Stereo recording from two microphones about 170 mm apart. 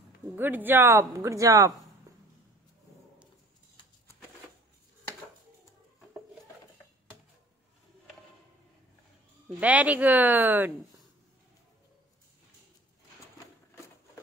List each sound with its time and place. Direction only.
0.4 s speech: 10° right (ahead or behind)
9.6 s speech: 10° right (ahead or behind)